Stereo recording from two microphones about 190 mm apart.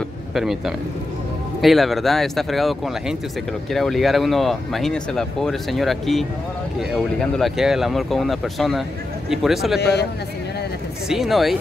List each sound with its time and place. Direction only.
0.3 s speech: centre (ahead or behind)
9.8 s a man's voice: 60° left (ahead or behind)
11.1 s speech: centre (ahead or behind)